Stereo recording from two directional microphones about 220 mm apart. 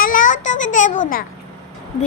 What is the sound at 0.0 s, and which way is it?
A child's voice, 35° left (ahead or behind).